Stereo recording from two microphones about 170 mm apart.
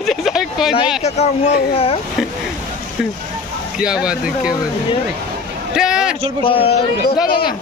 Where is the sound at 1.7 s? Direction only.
35° left (ahead or behind).